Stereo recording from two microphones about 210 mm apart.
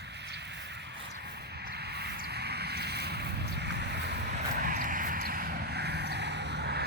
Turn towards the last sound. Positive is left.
turn(degrees=-55)  # may be behind; listen again after turning